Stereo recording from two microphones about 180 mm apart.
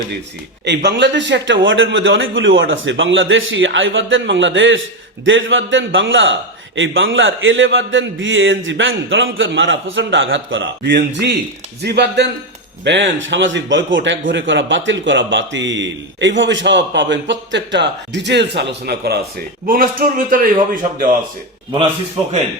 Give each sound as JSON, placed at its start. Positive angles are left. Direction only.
{"t": 0.6, "sound": "a man's voice", "side_deg": -70}
{"t": 12.8, "sound": "a man's voice", "side_deg": -85}